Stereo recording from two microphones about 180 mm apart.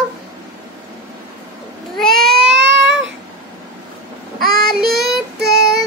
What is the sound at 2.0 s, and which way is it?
Baby cry, centre (ahead or behind).